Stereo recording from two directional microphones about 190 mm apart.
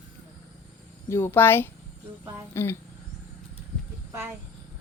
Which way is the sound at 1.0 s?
15° left (ahead or behind).